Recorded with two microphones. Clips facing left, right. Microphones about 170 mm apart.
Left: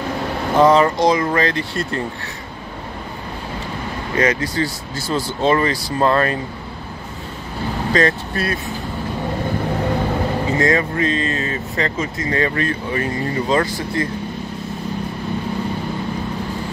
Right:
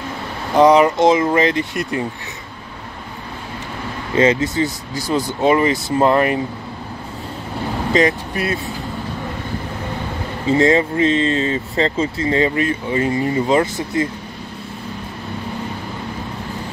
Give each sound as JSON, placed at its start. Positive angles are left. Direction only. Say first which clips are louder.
{"t": 0.6, "sound": "speech", "louder": "right 2 dB", "side_deg": -20}
{"t": 4.2, "sound": "speech", "louder": "right 4 dB", "side_deg": -25}
{"t": 7.9, "sound": "speech", "louder": "right 2 dB", "side_deg": -15}
{"t": 10.5, "sound": "speech", "louder": "right 6 dB", "side_deg": -25}